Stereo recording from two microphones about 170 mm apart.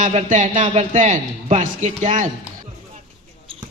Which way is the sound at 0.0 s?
45° right (ahead or behind).